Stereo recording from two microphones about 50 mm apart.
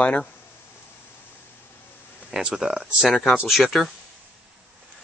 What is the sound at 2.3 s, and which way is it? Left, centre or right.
Speech, centre.